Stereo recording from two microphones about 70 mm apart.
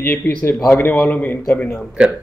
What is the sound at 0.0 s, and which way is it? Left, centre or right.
A man's voice, left.